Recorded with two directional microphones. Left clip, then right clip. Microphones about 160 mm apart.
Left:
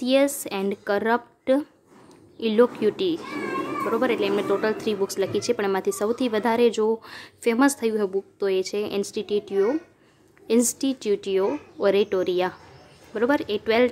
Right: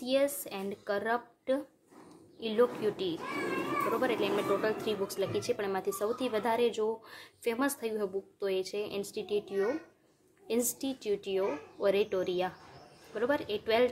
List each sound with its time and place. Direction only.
0.0 s speech: 40° left (ahead or behind)